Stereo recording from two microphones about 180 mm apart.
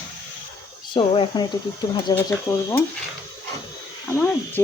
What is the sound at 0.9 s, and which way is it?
Speech, 30° left (ahead or behind).